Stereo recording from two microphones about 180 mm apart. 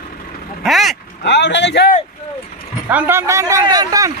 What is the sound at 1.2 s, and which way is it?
Speech, 75° left (ahead or behind).